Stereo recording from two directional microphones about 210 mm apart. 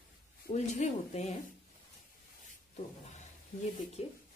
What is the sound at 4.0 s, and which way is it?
Speech, 30° left (ahead or behind).